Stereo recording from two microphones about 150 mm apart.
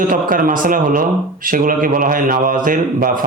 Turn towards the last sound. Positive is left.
turn(degrees=-65)  # may be behind; listen again after turning